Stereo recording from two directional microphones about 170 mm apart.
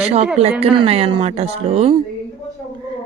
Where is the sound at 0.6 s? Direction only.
35° right (ahead or behind).